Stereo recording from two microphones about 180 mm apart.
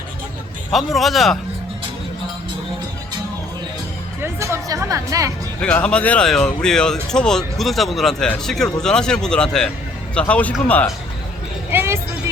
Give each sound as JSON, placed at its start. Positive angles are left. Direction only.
{"t": 0.7, "sound": "speech", "side_deg": 0}
{"t": 4.2, "sound": "speech", "side_deg": -15}
{"t": 5.5, "sound": "speech", "side_deg": 5}
{"t": 11.7, "sound": "vehicle", "side_deg": -10}